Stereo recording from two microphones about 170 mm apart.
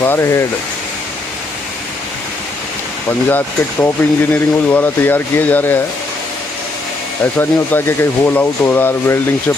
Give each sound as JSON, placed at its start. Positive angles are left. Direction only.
{"t": 0.0, "sound": "speech", "side_deg": 15}
{"t": 3.1, "sound": "speech", "side_deg": 10}
{"t": 7.3, "sound": "speech", "side_deg": 15}